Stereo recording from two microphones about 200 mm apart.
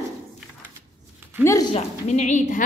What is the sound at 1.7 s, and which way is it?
Speech, 35° left (ahead or behind).